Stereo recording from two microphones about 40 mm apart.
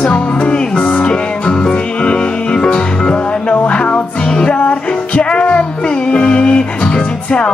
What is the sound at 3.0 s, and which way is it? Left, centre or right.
Music, left.